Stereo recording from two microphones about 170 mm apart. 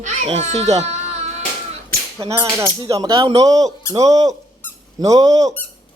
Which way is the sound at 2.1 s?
20° right (ahead or behind).